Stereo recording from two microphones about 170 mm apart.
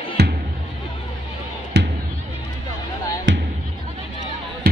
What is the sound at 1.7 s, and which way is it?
Music, 70° right (ahead or behind).